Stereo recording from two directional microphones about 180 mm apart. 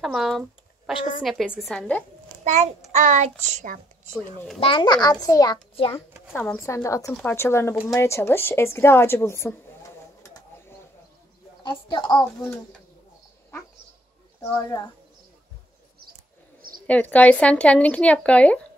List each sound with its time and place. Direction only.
0.0 s a sound: centre (ahead or behind)
1.2 s a woman's voice: centre (ahead or behind)
2.4 s a child's voice: 40° right (ahead or behind)
4.6 s a child's voice: 30° left (ahead or behind)
6.3 s speech: 10° left (ahead or behind)
10.2 s bird: 20° left (ahead or behind)
11.6 s a child's voice: 25° left (ahead or behind)
14.4 s speech: 15° left (ahead or behind)
16.8 s speech: 10° left (ahead or behind)